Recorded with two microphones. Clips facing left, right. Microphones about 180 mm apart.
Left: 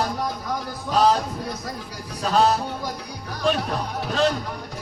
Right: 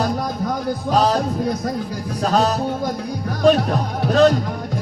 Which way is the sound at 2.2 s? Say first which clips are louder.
Right 2 dB; 45° right (ahead or behind).